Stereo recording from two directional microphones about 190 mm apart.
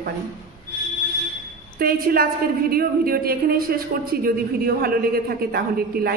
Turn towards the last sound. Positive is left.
turn(degrees=-55)  # may be behind; listen again after turning